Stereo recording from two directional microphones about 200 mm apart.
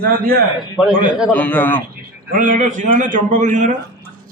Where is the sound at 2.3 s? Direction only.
40° right (ahead or behind).